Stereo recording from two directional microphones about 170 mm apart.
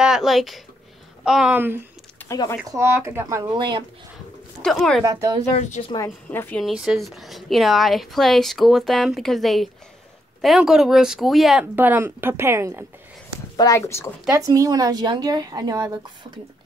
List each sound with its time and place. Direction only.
0.0 s speech: 5° right (ahead or behind)
2.1 s a sound: 20° left (ahead or behind)
2.6 s speech: 15° right (ahead or behind)
4.6 s speech: 5° left (ahead or behind)
5.0 s a woman's voice: 20° right (ahead or behind)
5.6 s a woman's voice: 45° left (ahead or behind)
5.9 s speech: 20° left (ahead or behind)
6.6 s a woman's voice: centre (ahead or behind)
13.6 s speech: 20° left (ahead or behind)
14.3 s a woman's voice: 20° right (ahead or behind)